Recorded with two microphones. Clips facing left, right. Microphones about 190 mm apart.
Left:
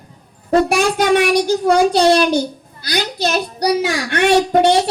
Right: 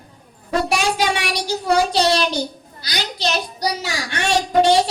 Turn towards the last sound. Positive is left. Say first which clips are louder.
# left 2 dB
turn(degrees=55)  # may be behind; listen again after turning